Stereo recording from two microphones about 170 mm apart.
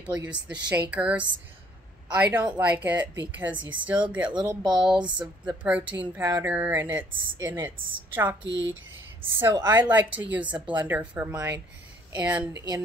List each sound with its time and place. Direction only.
0.0 s a woman's voice: 5° right (ahead or behind)
4.3 s speech: 25° right (ahead or behind)
5.6 s a woman's voice: 10° right (ahead or behind)
8.5 s speech: 90° right
9.4 s a woman's voice: 15° right (ahead or behind)